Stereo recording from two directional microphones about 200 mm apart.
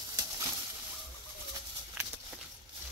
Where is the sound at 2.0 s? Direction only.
10° right (ahead or behind).